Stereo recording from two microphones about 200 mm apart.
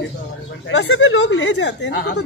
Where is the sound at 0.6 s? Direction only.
70° left (ahead or behind).